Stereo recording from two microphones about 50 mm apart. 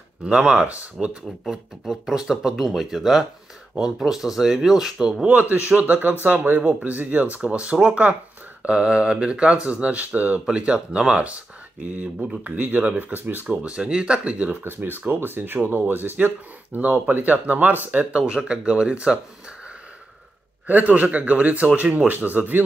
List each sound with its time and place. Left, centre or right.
0.2 s speech: right
1.5 s speech: centre
5.2 s a man's voice: right
10.5 s speech: right
12.5 s a man's voice: right
13.5 s speech: right
14.6 s a man's voice: right
20.6 s a man's voice: right